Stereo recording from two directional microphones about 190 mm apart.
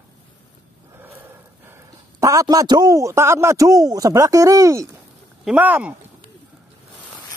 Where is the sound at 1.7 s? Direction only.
15° right (ahead or behind).